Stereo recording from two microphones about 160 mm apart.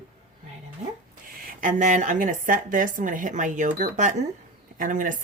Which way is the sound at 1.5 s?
55° right (ahead or behind).